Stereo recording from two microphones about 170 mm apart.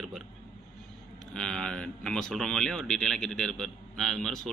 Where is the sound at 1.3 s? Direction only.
5° left (ahead or behind).